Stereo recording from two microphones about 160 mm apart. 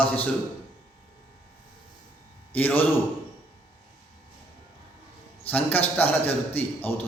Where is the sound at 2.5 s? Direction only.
10° left (ahead or behind).